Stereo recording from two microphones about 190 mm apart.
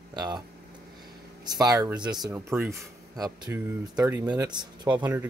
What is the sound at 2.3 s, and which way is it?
Speech, 10° right (ahead or behind).